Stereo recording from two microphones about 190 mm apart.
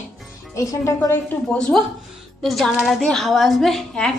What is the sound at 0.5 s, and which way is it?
A woman's voice, 15° left (ahead or behind).